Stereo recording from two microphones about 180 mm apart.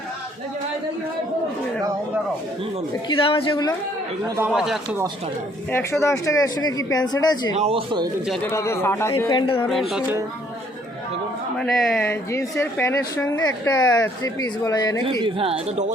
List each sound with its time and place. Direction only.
3.1 s speech: 30° left (ahead or behind)
4.4 s speech: 5° right (ahead or behind)
5.7 s speech: 15° left (ahead or behind)
7.5 s speech: 35° right (ahead or behind)
8.4 s a woman's voice: 15° left (ahead or behind)
9.9 s speech: 10° right (ahead or behind)
11.5 s speech: 5° left (ahead or behind)
12.0 s a woman's voice: 15° left (ahead or behind)
15.2 s speech: 30° right (ahead or behind)